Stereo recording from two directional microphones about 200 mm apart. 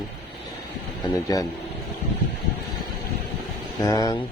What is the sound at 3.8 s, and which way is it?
Speech, 20° left (ahead or behind).